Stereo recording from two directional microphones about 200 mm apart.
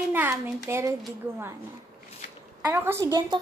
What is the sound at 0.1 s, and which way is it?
Speech, 10° right (ahead or behind).